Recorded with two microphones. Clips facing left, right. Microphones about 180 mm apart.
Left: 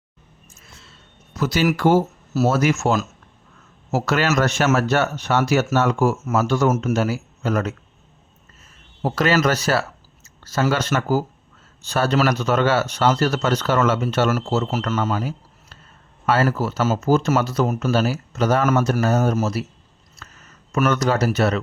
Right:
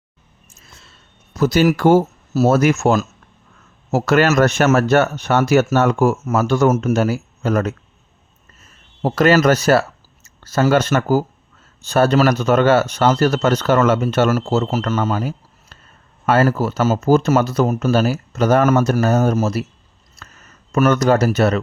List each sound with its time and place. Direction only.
1.4 s speech: 45° right (ahead or behind)
9.0 s speech: 50° right (ahead or behind)
20.7 s speech: 45° right (ahead or behind)